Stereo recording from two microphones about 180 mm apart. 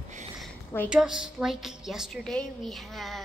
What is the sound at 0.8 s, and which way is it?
A woman's voice, 5° right (ahead or behind).